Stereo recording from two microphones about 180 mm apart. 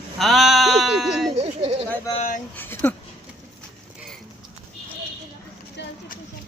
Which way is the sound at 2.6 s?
10° left (ahead or behind).